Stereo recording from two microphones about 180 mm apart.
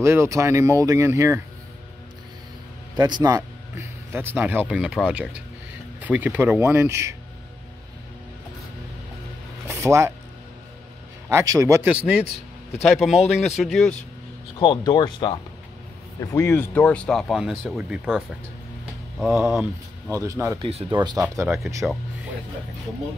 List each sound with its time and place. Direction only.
0.0 s speech: 15° right (ahead or behind)
3.0 s speech: 25° right (ahead or behind)
9.7 s speech: 15° right (ahead or behind)
11.2 s speech: 15° right (ahead or behind); by 13.9 s centre (ahead or behind)
14.6 s speech: 25° left (ahead or behind); by 19.6 s centre (ahead or behind)
20.1 s speech: 20° right (ahead or behind)